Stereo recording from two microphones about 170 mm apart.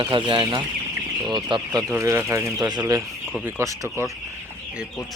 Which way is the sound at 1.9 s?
15° right (ahead or behind).